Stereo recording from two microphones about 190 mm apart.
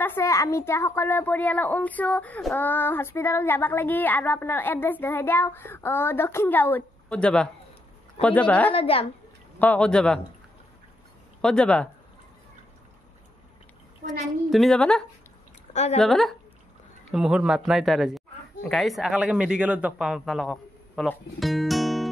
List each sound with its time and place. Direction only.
0.0 s a woman's voice: 15° left (ahead or behind)
8.7 s a woman's voice: 30° left (ahead or behind)
9.6 s a woman's voice: 5° left (ahead or behind)
11.4 s a woman's voice: 5° left (ahead or behind)
14.2 s a woman's voice: centre (ahead or behind)
15.7 s speech: 35° left (ahead or behind)
16.0 s a woman's voice: centre (ahead or behind)